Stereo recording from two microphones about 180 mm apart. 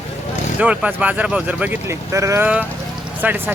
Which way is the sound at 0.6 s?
5° right (ahead or behind).